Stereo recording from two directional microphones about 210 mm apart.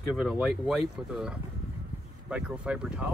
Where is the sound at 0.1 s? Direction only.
Centre (ahead or behind).